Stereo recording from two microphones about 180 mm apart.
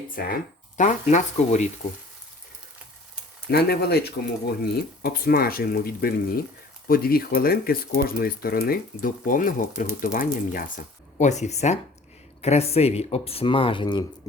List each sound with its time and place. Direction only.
0.2 s speech: 55° left (ahead or behind)
0.8 s speech: 45° left (ahead or behind)
3.5 s speech: 60° left (ahead or behind); by 14.0 s 25° left (ahead or behind)